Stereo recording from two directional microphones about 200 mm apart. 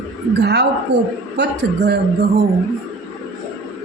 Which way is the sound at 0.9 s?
60° right (ahead or behind).